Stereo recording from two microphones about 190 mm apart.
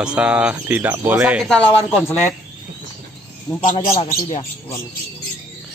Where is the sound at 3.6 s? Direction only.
35° left (ahead or behind).